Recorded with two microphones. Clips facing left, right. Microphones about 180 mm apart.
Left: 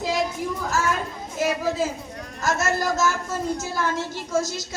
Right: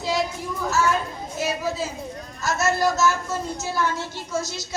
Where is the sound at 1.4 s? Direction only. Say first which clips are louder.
Left 3 dB; 50° left (ahead or behind).